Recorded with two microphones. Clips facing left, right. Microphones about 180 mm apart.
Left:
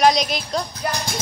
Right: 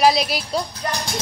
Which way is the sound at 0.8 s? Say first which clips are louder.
Left 1 dB; 5° left (ahead or behind).